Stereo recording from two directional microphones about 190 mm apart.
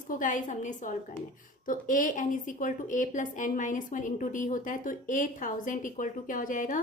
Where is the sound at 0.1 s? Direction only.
45° left (ahead or behind).